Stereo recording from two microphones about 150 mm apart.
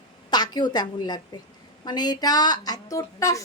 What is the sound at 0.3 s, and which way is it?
A woman's voice, 30° left (ahead or behind).